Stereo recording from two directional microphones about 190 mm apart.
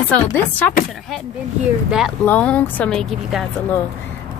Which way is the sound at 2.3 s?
5° left (ahead or behind).